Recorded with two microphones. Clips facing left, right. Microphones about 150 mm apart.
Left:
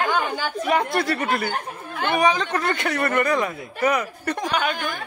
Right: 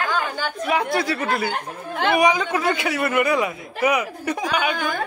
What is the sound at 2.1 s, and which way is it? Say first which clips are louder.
A man's voice: right 1 dB; 10° right (ahead or behind).